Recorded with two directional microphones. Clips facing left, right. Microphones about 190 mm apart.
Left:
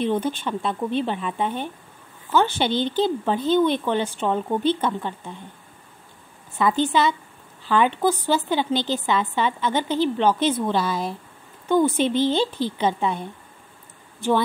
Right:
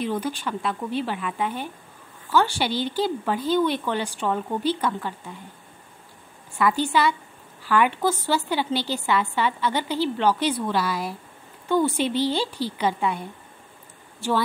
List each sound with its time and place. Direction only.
0.0 s a woman's voice: 25° left (ahead or behind)
6.5 s a woman's voice: 20° left (ahead or behind)